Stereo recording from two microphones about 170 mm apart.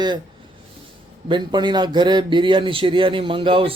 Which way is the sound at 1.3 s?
25° right (ahead or behind).